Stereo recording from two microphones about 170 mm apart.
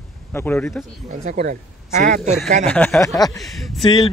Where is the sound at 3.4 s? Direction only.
Centre (ahead or behind).